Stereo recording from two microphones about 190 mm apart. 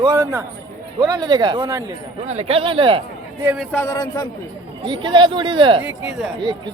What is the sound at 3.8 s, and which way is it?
Speech, 20° left (ahead or behind).